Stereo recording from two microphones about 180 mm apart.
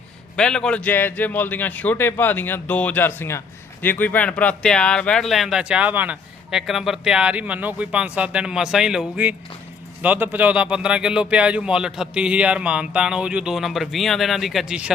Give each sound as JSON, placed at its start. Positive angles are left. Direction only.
{"t": 0.3, "sound": "a man's voice", "side_deg": 5}